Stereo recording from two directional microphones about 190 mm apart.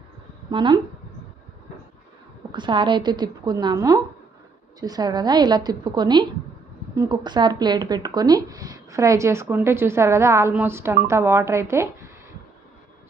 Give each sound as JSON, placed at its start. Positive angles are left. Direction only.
{"t": 0.5, "sound": "a woman's voice", "side_deg": -25}
{"t": 2.5, "sound": "a woman's voice", "side_deg": -25}